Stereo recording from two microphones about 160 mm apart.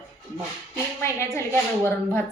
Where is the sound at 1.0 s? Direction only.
15° left (ahead or behind).